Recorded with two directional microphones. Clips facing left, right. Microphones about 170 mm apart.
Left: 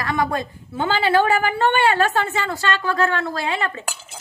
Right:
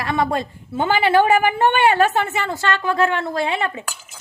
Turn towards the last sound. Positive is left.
turn(degrees=-15)  # may be behind; listen again after turning